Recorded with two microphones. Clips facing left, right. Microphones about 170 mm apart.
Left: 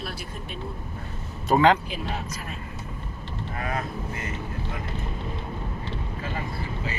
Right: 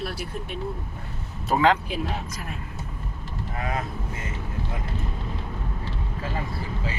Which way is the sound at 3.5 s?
20° right (ahead or behind).